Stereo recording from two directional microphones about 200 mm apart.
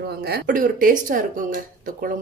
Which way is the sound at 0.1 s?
50° right (ahead or behind).